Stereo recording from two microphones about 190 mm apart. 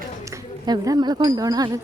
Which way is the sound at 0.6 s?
20° right (ahead or behind).